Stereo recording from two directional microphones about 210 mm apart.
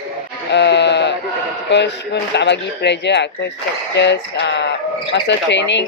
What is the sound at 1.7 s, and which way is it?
Speech, 55° left (ahead or behind).